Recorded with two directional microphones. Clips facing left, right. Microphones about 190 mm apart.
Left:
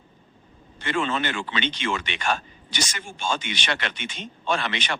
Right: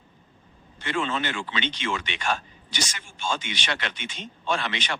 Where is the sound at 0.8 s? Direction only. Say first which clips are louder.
Left 2 dB; 55° left (ahead or behind).